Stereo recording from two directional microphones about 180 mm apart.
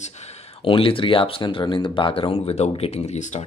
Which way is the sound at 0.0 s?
35° left (ahead or behind).